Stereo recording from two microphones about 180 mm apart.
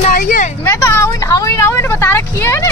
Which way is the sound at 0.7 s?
10° left (ahead or behind).